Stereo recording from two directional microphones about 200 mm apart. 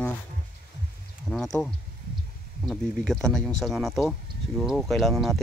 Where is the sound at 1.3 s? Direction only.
Centre (ahead or behind).